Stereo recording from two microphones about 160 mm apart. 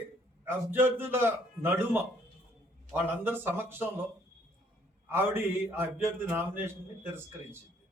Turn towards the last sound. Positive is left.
turn(degrees=-15)  # may be behind; listen again after turning